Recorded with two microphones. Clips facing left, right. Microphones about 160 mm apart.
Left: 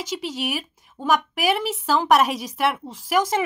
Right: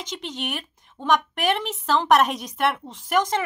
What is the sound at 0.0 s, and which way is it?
A woman's voice, 5° left (ahead or behind).